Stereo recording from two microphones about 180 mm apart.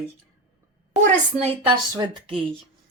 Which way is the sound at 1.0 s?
40° right (ahead or behind).